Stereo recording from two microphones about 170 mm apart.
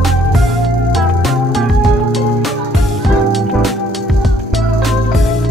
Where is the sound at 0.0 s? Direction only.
Centre (ahead or behind).